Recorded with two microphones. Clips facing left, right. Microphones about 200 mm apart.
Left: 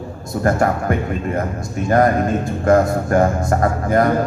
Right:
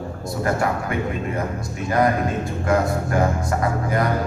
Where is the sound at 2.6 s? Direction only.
45° left (ahead or behind).